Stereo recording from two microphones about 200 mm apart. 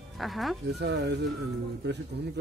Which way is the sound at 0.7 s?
60° right (ahead or behind).